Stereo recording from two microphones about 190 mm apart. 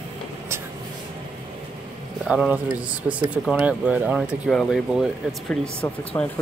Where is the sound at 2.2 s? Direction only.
5° right (ahead or behind).